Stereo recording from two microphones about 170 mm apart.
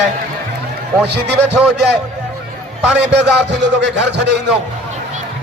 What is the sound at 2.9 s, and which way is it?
A man's voice, 90° right.